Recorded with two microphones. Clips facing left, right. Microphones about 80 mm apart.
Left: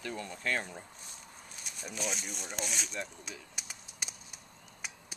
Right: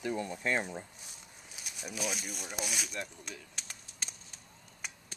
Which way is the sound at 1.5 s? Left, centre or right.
Centre.